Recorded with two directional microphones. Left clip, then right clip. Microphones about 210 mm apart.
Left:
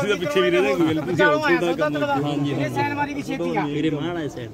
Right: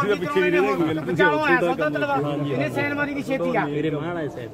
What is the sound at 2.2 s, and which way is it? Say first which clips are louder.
A man's voice: even; 55° left (ahead or behind).